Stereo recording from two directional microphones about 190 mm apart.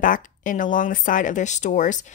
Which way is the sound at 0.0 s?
45° left (ahead or behind).